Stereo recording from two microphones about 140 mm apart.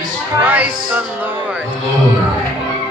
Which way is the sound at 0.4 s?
10° right (ahead or behind).